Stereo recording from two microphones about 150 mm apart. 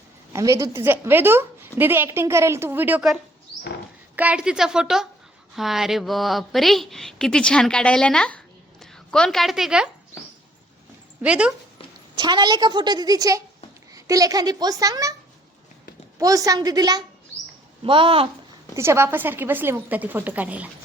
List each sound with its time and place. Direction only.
0.3 s a woman's voice: 20° right (ahead or behind)
4.1 s a woman's voice: 10° right (ahead or behind)
11.2 s a woman's voice: 10° right (ahead or behind)
12.1 s a woman's voice: 30° right (ahead or behind)
16.1 s a woman's voice: 20° right (ahead or behind)
18.7 s a woman's voice: 15° right (ahead or behind)